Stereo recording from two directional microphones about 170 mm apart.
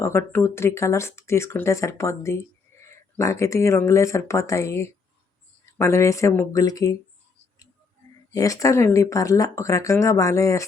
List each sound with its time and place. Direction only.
0.0 s speech: 15° left (ahead or behind)
8.3 s speech: 20° left (ahead or behind)